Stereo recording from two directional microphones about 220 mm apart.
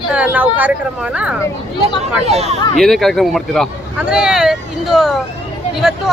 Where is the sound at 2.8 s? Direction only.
Centre (ahead or behind).